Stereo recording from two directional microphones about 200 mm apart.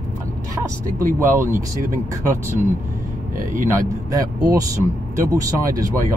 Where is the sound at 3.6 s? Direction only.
15° right (ahead or behind).